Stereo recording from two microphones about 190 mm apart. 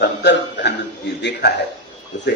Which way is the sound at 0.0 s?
65° left (ahead or behind).